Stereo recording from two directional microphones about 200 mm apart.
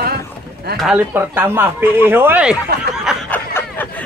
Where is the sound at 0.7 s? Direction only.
5° right (ahead or behind).